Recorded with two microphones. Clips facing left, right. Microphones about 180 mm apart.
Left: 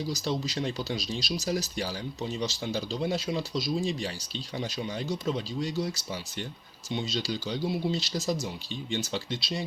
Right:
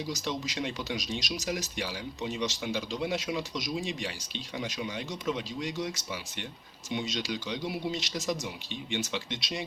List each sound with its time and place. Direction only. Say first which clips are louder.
0.1 s speech: left 3 dB; 35° left (ahead or behind)